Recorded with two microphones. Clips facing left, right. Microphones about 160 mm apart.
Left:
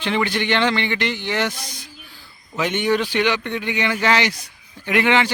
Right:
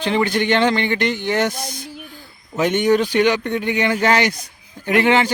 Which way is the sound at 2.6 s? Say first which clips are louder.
Right 4 dB; 45° right (ahead or behind).